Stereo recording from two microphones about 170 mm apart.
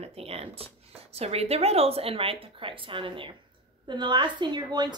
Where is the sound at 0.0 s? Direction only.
35° right (ahead or behind).